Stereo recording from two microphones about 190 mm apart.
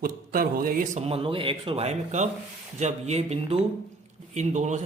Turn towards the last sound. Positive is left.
turn(degrees=-40)  # may be behind; listen again after turning